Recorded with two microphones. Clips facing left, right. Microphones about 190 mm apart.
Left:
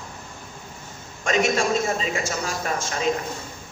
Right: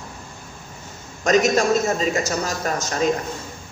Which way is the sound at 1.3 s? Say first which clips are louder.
Right 4 dB; 40° right (ahead or behind).